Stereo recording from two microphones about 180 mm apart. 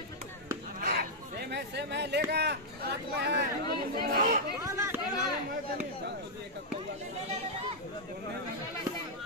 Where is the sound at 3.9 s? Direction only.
50° right (ahead or behind).